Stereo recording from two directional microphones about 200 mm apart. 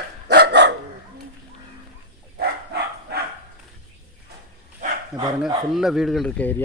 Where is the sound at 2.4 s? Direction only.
55° right (ahead or behind).